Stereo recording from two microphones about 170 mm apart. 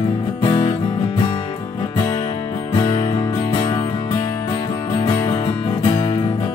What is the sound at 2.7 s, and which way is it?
Music, 20° left (ahead or behind).